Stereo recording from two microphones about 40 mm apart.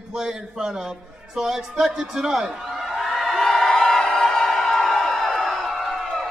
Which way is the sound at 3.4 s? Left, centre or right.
Centre.